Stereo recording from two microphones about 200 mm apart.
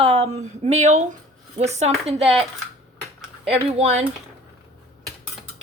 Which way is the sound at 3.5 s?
30° right (ahead or behind).